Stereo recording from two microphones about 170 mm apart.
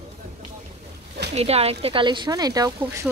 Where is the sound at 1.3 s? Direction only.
35° right (ahead or behind); by 3.0 s 20° right (ahead or behind).